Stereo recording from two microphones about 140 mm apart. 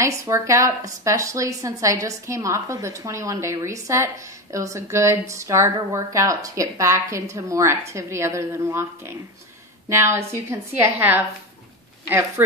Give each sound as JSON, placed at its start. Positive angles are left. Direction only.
{"t": 0.0, "sound": "a woman's voice", "side_deg": -20}